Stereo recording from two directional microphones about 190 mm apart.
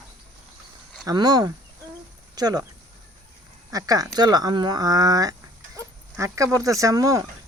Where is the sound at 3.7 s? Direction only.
20° right (ahead or behind).